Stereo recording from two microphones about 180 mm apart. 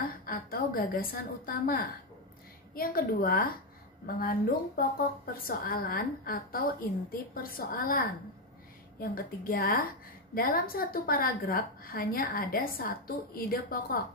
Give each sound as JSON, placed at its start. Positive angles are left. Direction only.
{"t": 0.0, "sound": "a woman's voice", "side_deg": 55}
{"t": 9.1, "sound": "a woman's voice", "side_deg": 55}